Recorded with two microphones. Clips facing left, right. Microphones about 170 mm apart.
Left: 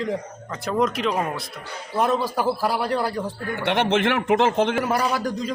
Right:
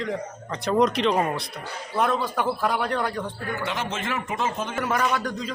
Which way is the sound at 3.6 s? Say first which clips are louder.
Left 11 dB; 65° left (ahead or behind).